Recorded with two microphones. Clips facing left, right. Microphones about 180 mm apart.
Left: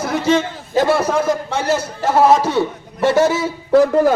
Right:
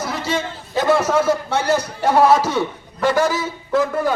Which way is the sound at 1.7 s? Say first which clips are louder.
Even; 15° right (ahead or behind).